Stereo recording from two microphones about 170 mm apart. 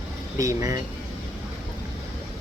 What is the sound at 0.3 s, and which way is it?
Speech, 20° right (ahead or behind).